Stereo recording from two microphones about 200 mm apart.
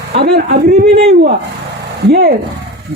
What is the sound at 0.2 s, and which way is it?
A man's voice, 55° right (ahead or behind).